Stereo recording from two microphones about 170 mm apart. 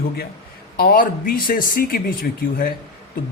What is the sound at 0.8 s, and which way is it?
Speech, 55° left (ahead or behind).